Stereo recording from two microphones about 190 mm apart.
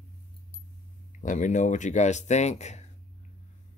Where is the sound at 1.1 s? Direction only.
40° left (ahead or behind).